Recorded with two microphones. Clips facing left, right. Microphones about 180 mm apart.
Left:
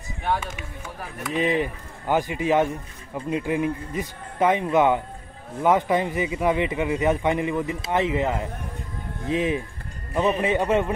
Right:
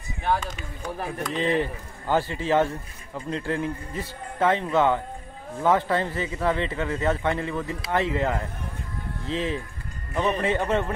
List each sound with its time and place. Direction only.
1.2 s speech: 15° left (ahead or behind)